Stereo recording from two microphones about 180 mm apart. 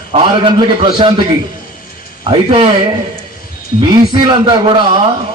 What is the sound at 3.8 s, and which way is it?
A man's voice, 25° right (ahead or behind).